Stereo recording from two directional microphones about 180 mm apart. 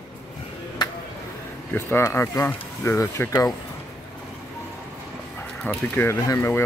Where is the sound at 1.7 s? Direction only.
10° left (ahead or behind).